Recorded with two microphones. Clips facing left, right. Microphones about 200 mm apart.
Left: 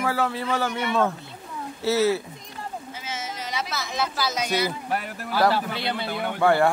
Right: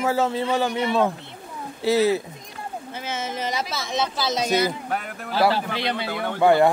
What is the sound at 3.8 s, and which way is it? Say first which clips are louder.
Speech: right 1 dB; 25° right (ahead or behind).